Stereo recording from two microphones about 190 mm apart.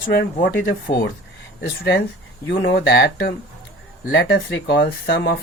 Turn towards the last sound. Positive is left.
turn(degrees=65)  # may be behind; listen again after turning